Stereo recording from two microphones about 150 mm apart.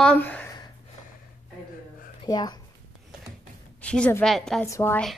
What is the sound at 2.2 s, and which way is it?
Speech, 25° left (ahead or behind).